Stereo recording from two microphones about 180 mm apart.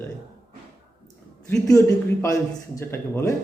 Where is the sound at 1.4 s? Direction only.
15° left (ahead or behind).